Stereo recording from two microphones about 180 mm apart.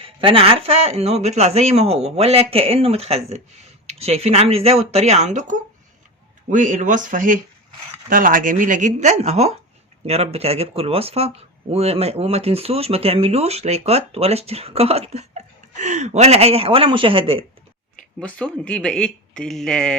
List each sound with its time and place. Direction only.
0.0 s speech: 30° right (ahead or behind)
18.2 s speech: 5° left (ahead or behind)